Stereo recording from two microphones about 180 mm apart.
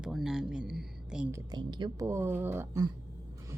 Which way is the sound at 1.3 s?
25° right (ahead or behind).